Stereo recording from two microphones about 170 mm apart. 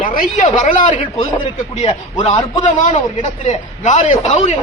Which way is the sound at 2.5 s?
45° left (ahead or behind).